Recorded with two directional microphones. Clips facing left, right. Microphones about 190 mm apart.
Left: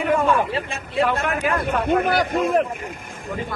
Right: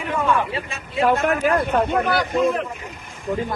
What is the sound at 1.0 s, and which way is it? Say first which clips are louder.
Speech: right 6 dB; 40° right (ahead or behind).